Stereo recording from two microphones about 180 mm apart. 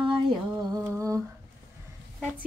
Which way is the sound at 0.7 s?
20° right (ahead or behind).